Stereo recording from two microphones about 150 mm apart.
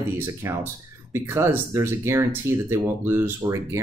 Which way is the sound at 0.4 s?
20° right (ahead or behind).